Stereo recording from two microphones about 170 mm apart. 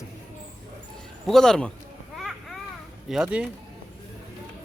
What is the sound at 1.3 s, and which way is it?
Speech, 5° left (ahead or behind).